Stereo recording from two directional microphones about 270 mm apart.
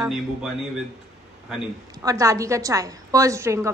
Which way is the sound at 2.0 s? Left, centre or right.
Centre.